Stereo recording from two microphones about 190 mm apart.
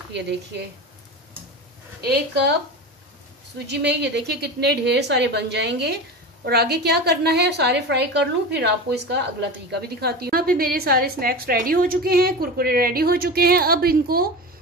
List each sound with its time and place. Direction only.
0.1 s a woman's voice: 65° right (ahead or behind)
2.0 s a woman's voice: 60° right (ahead or behind)
3.5 s a woman's voice: 60° right (ahead or behind)